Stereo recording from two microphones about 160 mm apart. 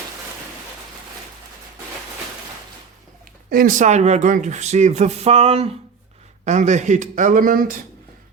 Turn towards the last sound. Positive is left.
turn(degrees=-60)  # may be behind; listen again after turning